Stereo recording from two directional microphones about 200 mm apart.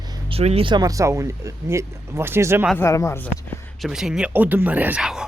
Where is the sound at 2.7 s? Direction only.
15° left (ahead or behind).